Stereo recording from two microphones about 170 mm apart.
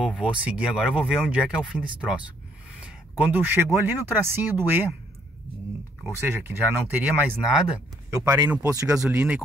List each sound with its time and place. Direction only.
0.0 s speech: 5° right (ahead or behind)
6.0 s speech: 15° right (ahead or behind)